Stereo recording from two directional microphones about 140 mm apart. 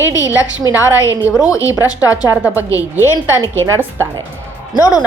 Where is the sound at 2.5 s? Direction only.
20° left (ahead or behind).